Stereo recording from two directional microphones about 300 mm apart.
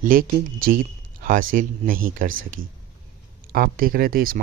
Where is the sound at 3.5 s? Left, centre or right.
Right.